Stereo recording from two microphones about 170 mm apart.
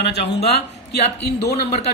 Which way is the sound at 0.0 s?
80° left.